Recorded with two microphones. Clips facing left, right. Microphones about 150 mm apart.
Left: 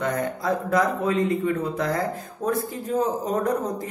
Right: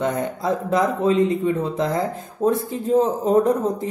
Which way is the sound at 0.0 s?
25° right (ahead or behind).